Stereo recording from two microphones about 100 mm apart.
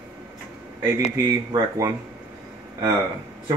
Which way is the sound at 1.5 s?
35° right (ahead or behind).